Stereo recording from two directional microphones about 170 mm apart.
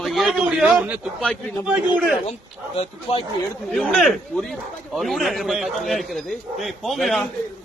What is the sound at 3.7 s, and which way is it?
A man's voice, centre (ahead or behind).